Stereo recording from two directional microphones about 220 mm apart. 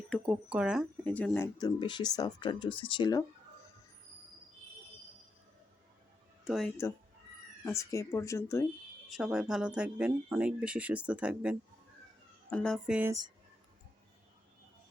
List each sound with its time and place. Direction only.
0.1 s speech: 5° right (ahead or behind); by 3.2 s 15° left (ahead or behind)
6.4 s speech: centre (ahead or behind)
7.6 s speech: 15° left (ahead or behind)
9.0 s speech: centre (ahead or behind)